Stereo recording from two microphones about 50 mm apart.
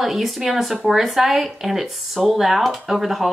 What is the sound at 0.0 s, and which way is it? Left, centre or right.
Speech, centre.